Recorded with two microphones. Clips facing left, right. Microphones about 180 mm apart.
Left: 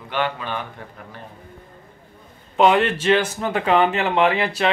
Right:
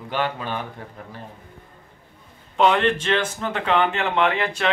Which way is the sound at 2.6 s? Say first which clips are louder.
Left 2 dB; 5° left (ahead or behind).